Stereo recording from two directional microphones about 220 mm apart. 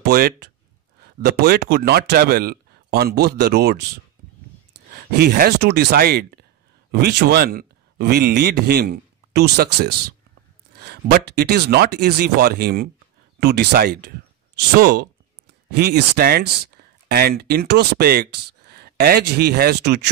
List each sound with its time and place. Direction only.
0.0 s speech: 45° right (ahead or behind)
5.1 s a man's voice: 45° right (ahead or behind)